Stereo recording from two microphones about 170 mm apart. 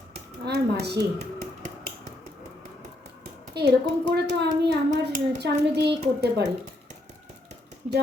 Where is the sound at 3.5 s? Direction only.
75° right (ahead or behind).